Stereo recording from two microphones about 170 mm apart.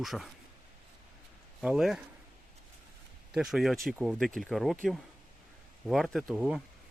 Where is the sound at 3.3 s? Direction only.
Centre (ahead or behind).